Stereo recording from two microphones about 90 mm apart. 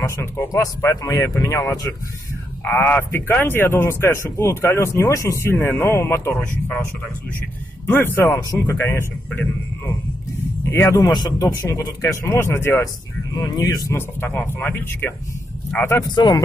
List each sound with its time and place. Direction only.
0.2 s speech: 35° left (ahead or behind)
2.7 s speech: 25° left (ahead or behind)
7.8 s speech: 25° left (ahead or behind)
10.7 s speech: 30° left (ahead or behind)
11.1 s speech: 45° left (ahead or behind); by 12.9 s 30° left (ahead or behind)
13.5 s speech: 50° left (ahead or behind)
13.9 s speech: 25° left (ahead or behind)
16.2 s speech: 55° left (ahead or behind)